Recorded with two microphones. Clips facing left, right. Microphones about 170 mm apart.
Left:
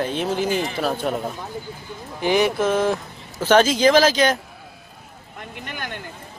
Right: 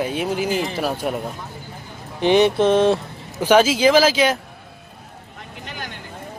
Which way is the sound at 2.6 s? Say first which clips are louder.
Right 4 dB; 25° right (ahead or behind).